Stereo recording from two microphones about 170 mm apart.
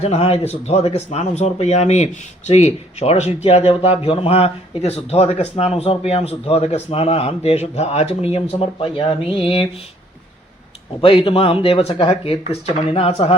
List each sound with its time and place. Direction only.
0.0 s speech: 35° left (ahead or behind)
11.0 s speech: 30° left (ahead or behind)